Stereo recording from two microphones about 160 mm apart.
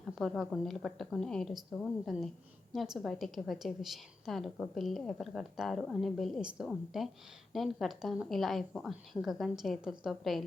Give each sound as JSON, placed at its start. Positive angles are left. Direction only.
{"t": 0.0, "sound": "a woman's voice", "side_deg": 0}